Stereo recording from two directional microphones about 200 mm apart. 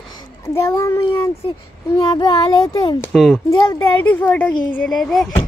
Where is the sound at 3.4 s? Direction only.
15° left (ahead or behind).